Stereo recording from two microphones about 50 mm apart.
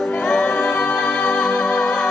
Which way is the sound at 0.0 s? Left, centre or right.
Centre.